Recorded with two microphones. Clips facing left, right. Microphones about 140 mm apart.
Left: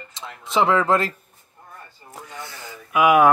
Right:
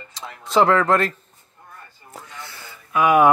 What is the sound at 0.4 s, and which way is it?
Speech, 25° left (ahead or behind).